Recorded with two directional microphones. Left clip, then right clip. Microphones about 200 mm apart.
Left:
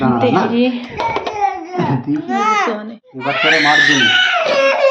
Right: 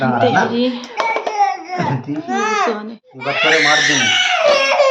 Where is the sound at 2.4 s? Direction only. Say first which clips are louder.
Left 2 dB; 10° right (ahead or behind).